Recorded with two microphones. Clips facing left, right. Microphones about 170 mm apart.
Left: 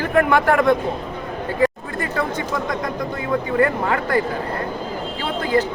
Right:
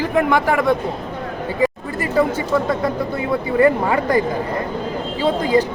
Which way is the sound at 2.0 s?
10° right (ahead or behind).